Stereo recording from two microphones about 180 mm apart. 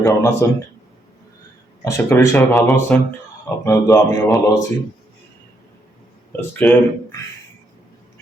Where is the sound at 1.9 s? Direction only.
15° left (ahead or behind).